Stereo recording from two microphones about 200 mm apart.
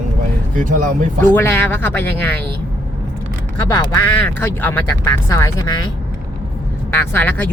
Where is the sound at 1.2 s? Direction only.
10° left (ahead or behind).